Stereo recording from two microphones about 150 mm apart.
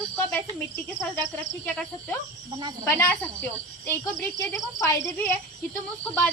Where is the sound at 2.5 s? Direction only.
30° right (ahead or behind).